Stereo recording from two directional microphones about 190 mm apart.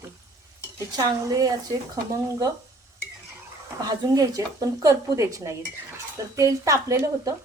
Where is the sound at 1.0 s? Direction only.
20° right (ahead or behind).